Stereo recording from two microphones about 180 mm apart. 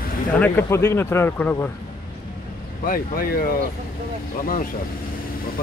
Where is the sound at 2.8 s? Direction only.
50° left (ahead or behind).